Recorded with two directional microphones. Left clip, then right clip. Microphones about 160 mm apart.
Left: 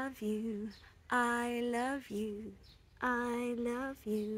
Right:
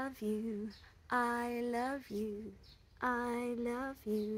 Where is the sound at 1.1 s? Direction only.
20° left (ahead or behind).